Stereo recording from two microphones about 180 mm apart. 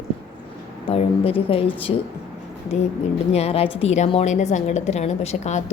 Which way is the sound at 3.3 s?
35° left (ahead or behind).